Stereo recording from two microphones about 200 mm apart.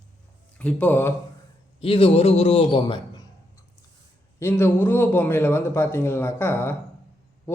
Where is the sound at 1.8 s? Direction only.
30° left (ahead or behind).